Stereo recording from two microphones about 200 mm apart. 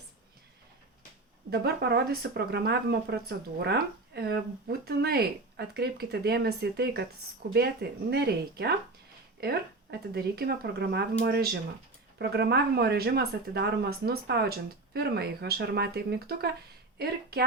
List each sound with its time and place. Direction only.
1.5 s speech: 55° right (ahead or behind)